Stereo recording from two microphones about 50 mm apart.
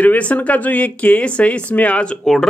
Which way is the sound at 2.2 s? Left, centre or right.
Centre.